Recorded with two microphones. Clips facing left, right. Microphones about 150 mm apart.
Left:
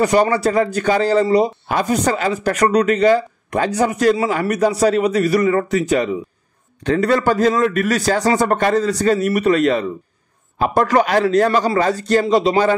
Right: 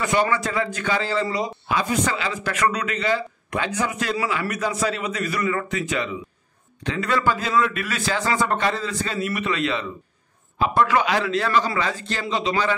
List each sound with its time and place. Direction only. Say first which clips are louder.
0.0 s a man's voice: left 7 dB; 40° left (ahead or behind)